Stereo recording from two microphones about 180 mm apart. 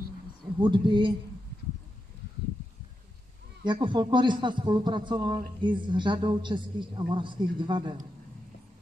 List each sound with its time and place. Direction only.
0.6 s a man's voice: 25° right (ahead or behind)
3.6 s a man's voice: 25° right (ahead or behind)